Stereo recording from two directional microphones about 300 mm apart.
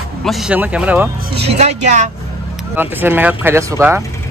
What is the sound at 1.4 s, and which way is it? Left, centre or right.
Speech, right.